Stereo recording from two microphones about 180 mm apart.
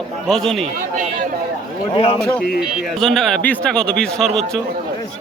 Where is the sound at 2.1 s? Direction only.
5° left (ahead or behind).